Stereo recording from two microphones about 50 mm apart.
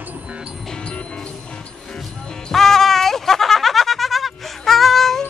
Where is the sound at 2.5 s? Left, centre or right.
Centre.